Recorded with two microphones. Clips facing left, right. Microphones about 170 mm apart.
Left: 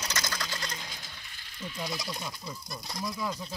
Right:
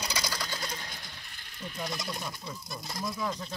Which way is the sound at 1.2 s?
55° right (ahead or behind).